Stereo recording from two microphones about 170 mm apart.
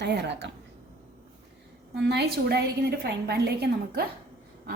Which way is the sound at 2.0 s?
80° right.